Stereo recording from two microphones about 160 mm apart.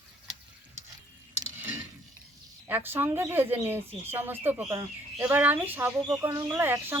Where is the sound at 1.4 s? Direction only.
15° right (ahead or behind).